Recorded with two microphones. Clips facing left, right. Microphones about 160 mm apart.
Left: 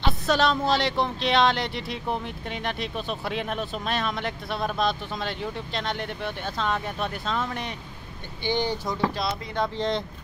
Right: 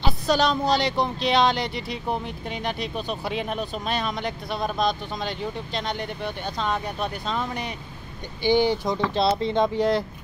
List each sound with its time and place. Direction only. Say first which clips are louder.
0.0 s a sound: right 1 dB; centre (ahead or behind)
0.7 s speech: right 1 dB; centre (ahead or behind)
8.4 s speech: right 6 dB; 15° right (ahead or behind)
9.1 s speech: right 8 dB; 30° right (ahead or behind)
9.8 s speech: right 5 dB; 5° right (ahead or behind)